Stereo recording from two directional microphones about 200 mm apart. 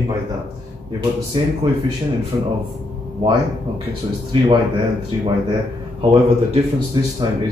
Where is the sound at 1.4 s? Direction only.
20° right (ahead or behind).